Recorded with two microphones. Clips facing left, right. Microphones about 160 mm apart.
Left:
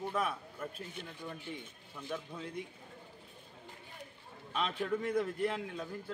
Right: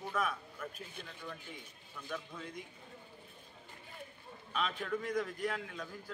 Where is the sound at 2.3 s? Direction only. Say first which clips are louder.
Left 3 dB; 30° left (ahead or behind).